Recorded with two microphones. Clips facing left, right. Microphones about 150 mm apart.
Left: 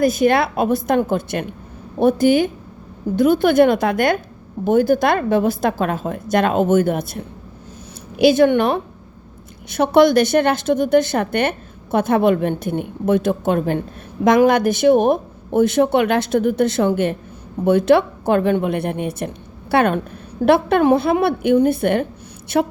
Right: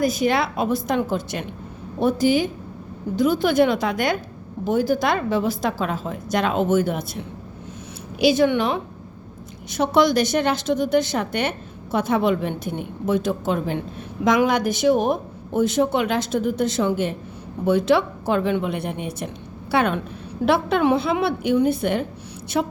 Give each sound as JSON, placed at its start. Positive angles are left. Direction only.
{"t": 0.0, "sound": "a woman's voice", "side_deg": 55}